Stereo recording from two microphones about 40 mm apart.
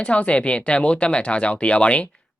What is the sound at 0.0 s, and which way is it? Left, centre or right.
Speech, left.